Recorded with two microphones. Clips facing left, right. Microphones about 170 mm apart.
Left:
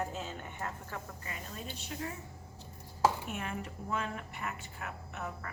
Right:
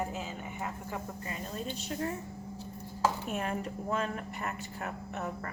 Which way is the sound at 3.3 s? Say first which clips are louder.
Right 5 dB; 40° right (ahead or behind).